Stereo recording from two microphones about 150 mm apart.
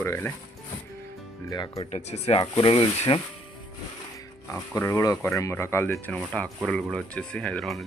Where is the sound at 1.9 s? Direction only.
45° left (ahead or behind).